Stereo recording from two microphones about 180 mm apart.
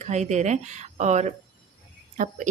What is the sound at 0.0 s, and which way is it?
A woman's voice, 40° right (ahead or behind).